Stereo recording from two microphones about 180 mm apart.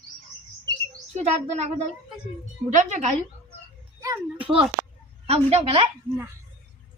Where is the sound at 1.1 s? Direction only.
35° right (ahead or behind).